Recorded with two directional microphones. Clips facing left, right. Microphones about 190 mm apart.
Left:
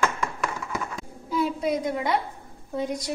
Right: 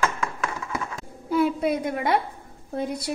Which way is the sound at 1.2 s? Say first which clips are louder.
Right 3 dB; 60° right (ahead or behind).